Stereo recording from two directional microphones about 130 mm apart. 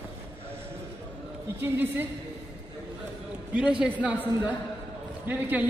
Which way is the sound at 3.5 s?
5° right (ahead or behind).